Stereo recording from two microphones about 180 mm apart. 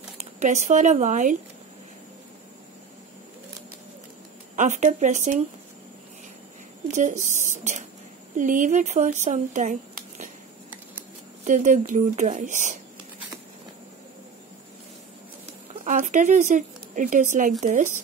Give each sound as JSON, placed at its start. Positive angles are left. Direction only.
{"t": 0.4, "sound": "speech", "side_deg": -40}
{"t": 4.6, "sound": "a woman's voice", "side_deg": -40}
{"t": 6.9, "sound": "speech", "side_deg": -40}
{"t": 11.4, "sound": "a woman's voice", "side_deg": -45}
{"t": 15.8, "sound": "speech", "side_deg": -45}